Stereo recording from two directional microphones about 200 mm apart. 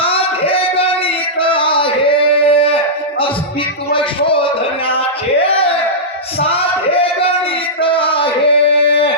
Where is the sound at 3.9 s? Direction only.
25° left (ahead or behind).